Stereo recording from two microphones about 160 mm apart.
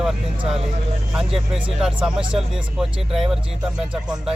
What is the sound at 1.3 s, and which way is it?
Speech, centre (ahead or behind).